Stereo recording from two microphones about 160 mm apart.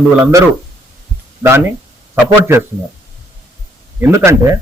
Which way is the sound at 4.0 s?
15° right (ahead or behind).